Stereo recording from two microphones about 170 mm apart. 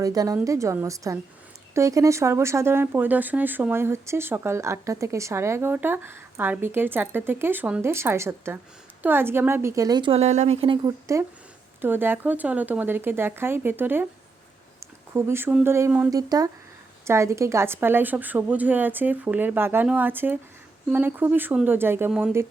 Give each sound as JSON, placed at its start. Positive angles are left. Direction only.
{"t": 0.0, "sound": "a woman's voice", "side_deg": -20}
{"t": 10.8, "sound": "a woman's voice", "side_deg": -15}